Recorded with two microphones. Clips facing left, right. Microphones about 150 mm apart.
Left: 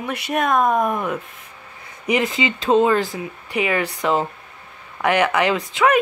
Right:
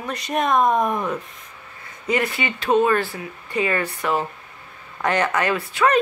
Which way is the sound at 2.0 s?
20° left (ahead or behind).